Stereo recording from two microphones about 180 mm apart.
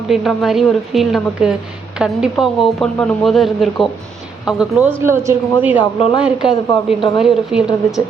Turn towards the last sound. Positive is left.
turn(degrees=-5)  # may be behind; listen again after turning